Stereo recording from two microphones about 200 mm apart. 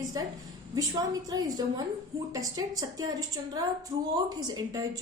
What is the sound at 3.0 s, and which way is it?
A woman's voice, 20° right (ahead or behind).